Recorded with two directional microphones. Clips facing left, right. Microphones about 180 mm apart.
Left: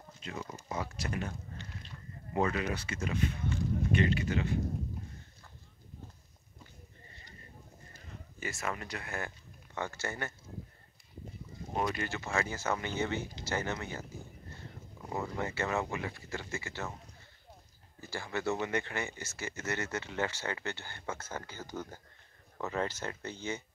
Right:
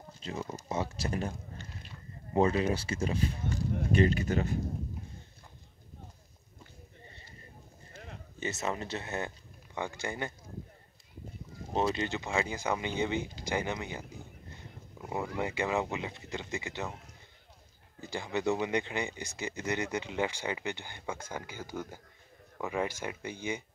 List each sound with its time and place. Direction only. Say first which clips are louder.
0.2 s speech: right 4 dB; 30° right (ahead or behind)
2.3 s speech: right 5 dB; 30° right (ahead or behind)
8.4 s speech: right 4 dB; 20° right (ahead or behind)
11.7 s speech: right 4 dB; 25° right (ahead or behind)
18.0 s speech: right 3 dB; 20° right (ahead or behind)